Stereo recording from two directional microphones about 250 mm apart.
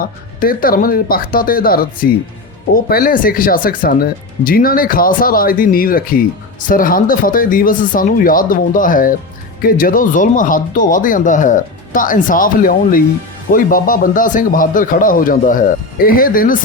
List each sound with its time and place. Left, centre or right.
0.0 s speech: left